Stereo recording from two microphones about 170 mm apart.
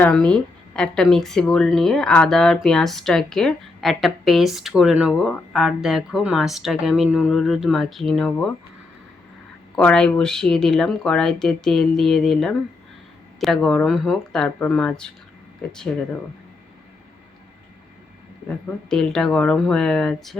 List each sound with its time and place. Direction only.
0.0 s speech: 5° left (ahead or behind)
9.7 s speech: 5° left (ahead or behind)
18.4 s speech: 5° left (ahead or behind)